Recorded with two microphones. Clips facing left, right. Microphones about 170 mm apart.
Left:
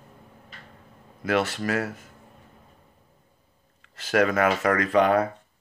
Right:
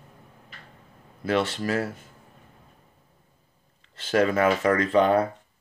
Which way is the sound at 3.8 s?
30° right (ahead or behind).